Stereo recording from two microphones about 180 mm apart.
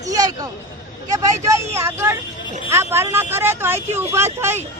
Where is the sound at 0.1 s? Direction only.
20° right (ahead or behind).